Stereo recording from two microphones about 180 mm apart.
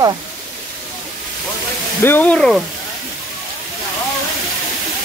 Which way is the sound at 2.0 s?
10° left (ahead or behind).